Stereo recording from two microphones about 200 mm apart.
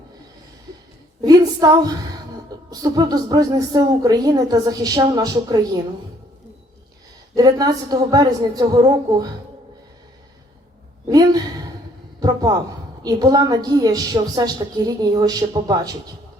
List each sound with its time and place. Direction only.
1.2 s a woman's voice: 20° right (ahead or behind)
7.3 s a woman's voice: 20° right (ahead or behind)
11.1 s a woman's voice: 20° right (ahead or behind)